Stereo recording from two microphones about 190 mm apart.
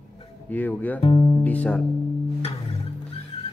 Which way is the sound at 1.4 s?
5° left (ahead or behind).